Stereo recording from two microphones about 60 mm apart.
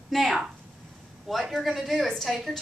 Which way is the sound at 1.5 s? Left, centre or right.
Centre.